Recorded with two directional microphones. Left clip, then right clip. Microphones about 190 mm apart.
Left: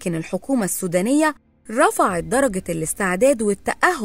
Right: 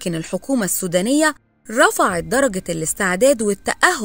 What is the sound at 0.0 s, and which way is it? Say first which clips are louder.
Speech: right 1 dB; 20° right (ahead or behind).